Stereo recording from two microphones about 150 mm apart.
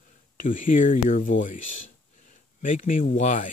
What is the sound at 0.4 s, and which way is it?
Speech, 60° left (ahead or behind).